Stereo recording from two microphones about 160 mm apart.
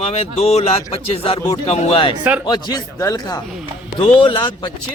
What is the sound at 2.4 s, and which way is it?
Speech, 25° left (ahead or behind).